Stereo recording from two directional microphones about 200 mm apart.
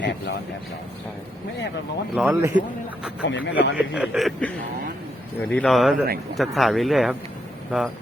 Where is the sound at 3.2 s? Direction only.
70° left (ahead or behind).